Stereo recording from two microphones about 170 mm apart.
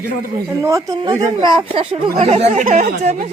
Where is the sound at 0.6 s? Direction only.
20° right (ahead or behind).